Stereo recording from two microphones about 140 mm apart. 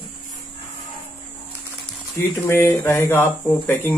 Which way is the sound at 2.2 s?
15° left (ahead or behind).